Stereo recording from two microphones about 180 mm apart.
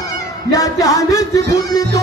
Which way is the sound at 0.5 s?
20° left (ahead or behind).